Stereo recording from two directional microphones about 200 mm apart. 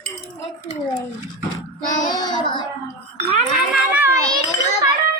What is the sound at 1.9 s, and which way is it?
Child singing, 20° left (ahead or behind).